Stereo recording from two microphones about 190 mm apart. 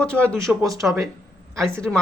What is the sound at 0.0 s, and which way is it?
Speech, 5° left (ahead or behind).